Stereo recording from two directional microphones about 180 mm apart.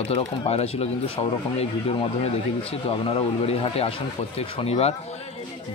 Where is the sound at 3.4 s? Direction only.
35° left (ahead or behind).